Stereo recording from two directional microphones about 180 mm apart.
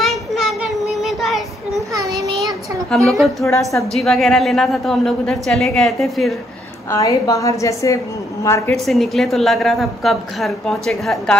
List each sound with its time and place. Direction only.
0.0 s child singing: centre (ahead or behind)
2.9 s a woman's voice: 5° left (ahead or behind)
3.4 s a woman's voice: 15° left (ahead or behind)
3.9 s a woman's voice: centre (ahead or behind)
6.9 s a woman's voice: 20° left (ahead or behind)
8.7 s a woman's voice: centre (ahead or behind)